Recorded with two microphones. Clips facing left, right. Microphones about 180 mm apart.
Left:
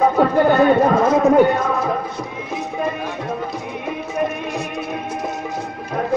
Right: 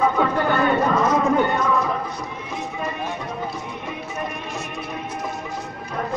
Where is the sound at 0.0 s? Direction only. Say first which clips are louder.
Left 5 dB; 40° left (ahead or behind).